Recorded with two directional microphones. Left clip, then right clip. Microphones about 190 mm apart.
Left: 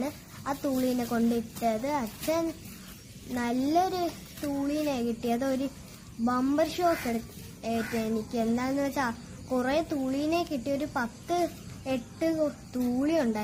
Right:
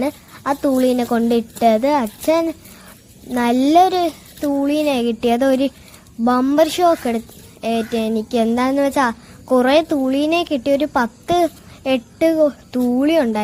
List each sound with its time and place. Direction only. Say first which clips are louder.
0.0 s a child's voice: right 13 dB; 40° right (ahead or behind)